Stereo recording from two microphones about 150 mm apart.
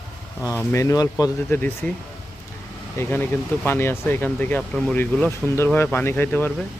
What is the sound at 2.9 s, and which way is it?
Speech, 15° left (ahead or behind).